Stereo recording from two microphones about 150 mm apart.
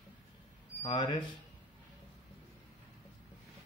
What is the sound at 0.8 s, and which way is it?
Speech, 35° left (ahead or behind).